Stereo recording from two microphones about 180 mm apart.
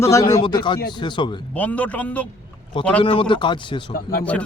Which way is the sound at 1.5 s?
10° left (ahead or behind).